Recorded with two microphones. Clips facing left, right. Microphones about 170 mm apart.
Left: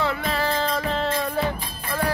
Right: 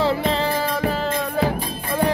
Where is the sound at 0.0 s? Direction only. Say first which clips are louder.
Right 5 dB; 30° right (ahead or behind).